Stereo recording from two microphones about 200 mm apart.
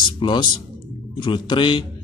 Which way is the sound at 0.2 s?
25° left (ahead or behind).